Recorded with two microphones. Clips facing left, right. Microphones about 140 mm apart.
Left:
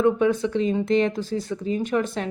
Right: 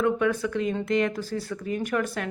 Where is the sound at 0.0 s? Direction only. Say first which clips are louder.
Left 4 dB; 25° left (ahead or behind).